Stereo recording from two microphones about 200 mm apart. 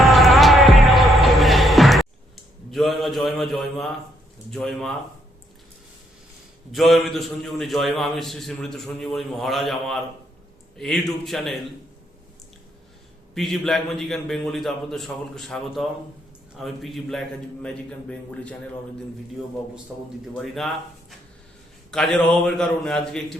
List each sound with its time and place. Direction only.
0.0 s music: centre (ahead or behind)
4.5 s a man's voice: centre (ahead or behind)
6.7 s a man's voice: centre (ahead or behind)
13.3 s a man's voice: centre (ahead or behind)
20.2 s a man's voice: centre (ahead or behind)
21.9 s a man's voice: 5° left (ahead or behind)